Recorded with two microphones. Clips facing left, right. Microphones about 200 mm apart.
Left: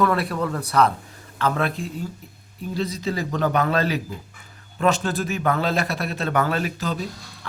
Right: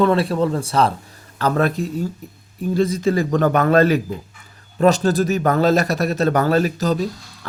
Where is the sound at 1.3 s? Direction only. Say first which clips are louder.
Right 5 dB; 40° right (ahead or behind).